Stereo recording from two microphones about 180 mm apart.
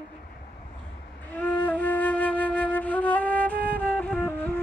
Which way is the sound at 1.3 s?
10° left (ahead or behind).